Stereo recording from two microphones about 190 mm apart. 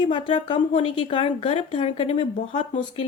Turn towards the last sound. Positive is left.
turn(degrees=35)  # may be behind; listen again after turning